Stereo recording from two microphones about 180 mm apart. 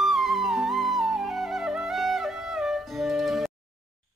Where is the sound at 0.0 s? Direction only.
Centre (ahead or behind).